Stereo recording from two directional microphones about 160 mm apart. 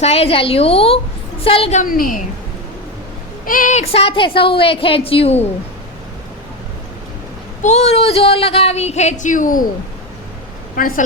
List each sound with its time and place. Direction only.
0.0 s a woman's voice: 40° left (ahead or behind)
1.8 s a woman's voice: 60° left (ahead or behind)
3.4 s a woman's voice: 60° left (ahead or behind); by 5.5 s 40° left (ahead or behind)
7.6 s speech: 45° left (ahead or behind)
10.8 s a woman's voice: 60° left (ahead or behind)